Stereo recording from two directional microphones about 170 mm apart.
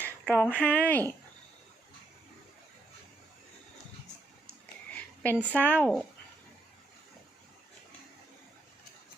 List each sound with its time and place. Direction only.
0.3 s speech: 10° left (ahead or behind)
4.9 s a woman's voice: 10° left (ahead or behind)